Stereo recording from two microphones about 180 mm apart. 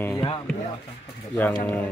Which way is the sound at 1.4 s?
10° left (ahead or behind).